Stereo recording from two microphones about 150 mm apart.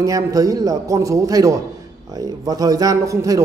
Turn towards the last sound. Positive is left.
turn(degrees=-20)  # may be behind; listen again after turning